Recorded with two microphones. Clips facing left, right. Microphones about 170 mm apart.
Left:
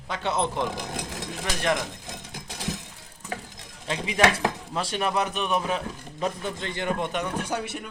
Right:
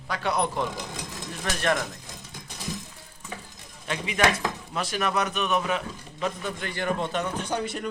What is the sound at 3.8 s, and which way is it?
A man's voice, 25° left (ahead or behind).